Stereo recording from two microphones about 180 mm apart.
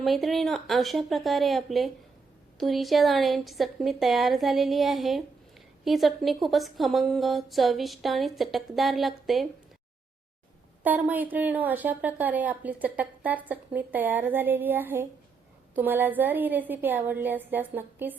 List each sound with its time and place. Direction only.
0.0 s a woman's voice: centre (ahead or behind)
10.8 s a woman's voice: 10° right (ahead or behind)